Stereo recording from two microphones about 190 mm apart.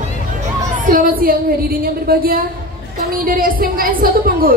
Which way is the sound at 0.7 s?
45° right (ahead or behind).